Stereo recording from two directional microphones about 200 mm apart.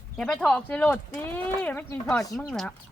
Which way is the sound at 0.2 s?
5° left (ahead or behind).